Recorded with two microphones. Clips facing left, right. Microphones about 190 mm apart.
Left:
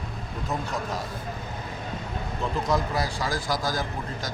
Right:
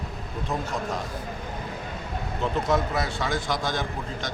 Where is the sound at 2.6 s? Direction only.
Centre (ahead or behind).